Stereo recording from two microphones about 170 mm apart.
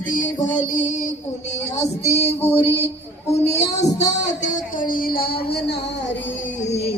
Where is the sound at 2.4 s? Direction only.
15° left (ahead or behind).